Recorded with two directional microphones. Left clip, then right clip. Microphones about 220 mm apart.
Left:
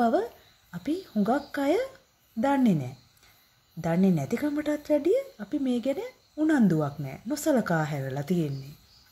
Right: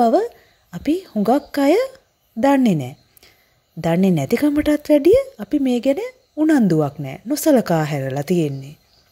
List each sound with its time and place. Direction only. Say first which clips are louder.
0.0 s a woman's voice: right 9 dB; 35° right (ahead or behind)